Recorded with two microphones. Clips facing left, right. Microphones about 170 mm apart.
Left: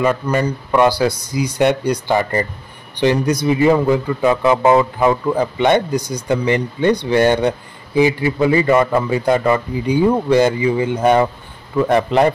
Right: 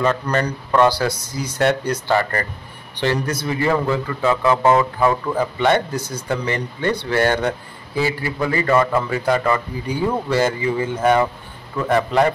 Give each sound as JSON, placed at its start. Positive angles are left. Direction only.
{"t": 0.0, "sound": "a man's voice", "side_deg": 10}